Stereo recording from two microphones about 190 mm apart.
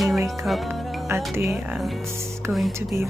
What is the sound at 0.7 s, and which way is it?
Speech, 15° right (ahead or behind).